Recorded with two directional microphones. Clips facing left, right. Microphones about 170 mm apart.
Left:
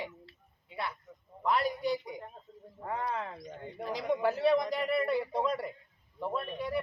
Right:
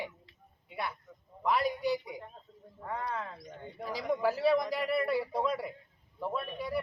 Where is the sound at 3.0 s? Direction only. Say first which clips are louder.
Left 2 dB; 20° left (ahead or behind).